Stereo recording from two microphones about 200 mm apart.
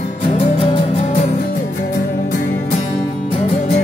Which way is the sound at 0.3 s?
30° left (ahead or behind).